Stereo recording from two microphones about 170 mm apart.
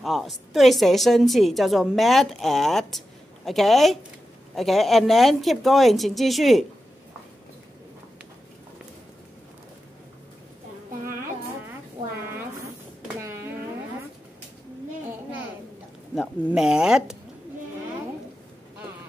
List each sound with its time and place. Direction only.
0.0 s a woman's voice: centre (ahead or behind)
13.2 s a sound: 15° right (ahead or behind)
16.2 s a woman's voice: 5° right (ahead or behind)